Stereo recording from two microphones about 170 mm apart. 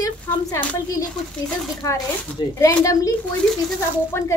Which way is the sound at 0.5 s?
15° left (ahead or behind).